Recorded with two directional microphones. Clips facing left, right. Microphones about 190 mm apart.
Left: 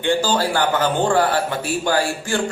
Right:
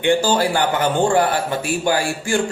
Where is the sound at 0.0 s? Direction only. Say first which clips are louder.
Right 2 dB; 15° right (ahead or behind).